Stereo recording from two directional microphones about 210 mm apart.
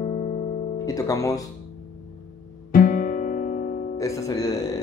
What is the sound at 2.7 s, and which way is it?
Music, 40° left (ahead or behind).